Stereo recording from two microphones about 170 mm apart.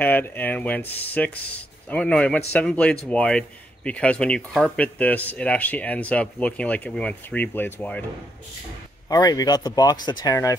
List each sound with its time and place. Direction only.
0.0 s speech: 10° left (ahead or behind)
9.1 s speech: 25° left (ahead or behind)